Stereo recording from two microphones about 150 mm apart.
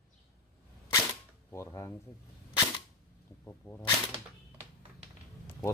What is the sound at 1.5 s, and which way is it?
Speech, 20° left (ahead or behind).